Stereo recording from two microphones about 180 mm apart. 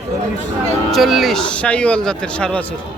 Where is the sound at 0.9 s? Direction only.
Centre (ahead or behind).